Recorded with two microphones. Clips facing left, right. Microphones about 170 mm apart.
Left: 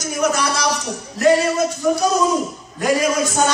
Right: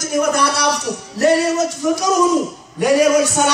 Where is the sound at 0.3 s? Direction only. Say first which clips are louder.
Right 3 dB; 60° right (ahead or behind).